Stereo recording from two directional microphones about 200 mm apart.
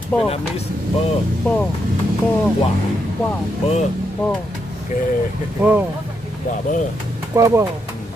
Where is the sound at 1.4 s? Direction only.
5° left (ahead or behind).